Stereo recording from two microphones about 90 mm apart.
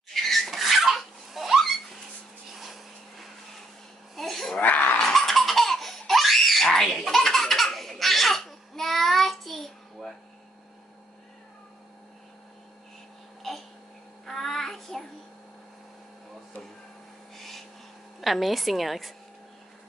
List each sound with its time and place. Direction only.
0.1 s a sound: centre (ahead or behind)
4.1 s laughter: centre (ahead or behind)
4.6 s wail: 20° left (ahead or behind)
4.9 s laughter: 5° left (ahead or behind)
13.4 s a sound: 5° left (ahead or behind)
14.2 s child singing: centre (ahead or behind)
17.4 s owl: centre (ahead or behind)
18.2 s a woman's voice: centre (ahead or behind)